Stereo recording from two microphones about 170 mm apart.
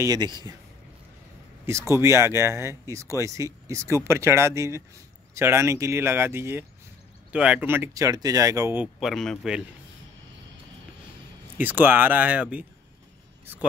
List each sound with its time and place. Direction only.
0.0 s speech: 25° right (ahead or behind)
1.7 s speech: 15° right (ahead or behind)
9.0 s speech: 5° left (ahead or behind)
11.5 s speech: 10° right (ahead or behind)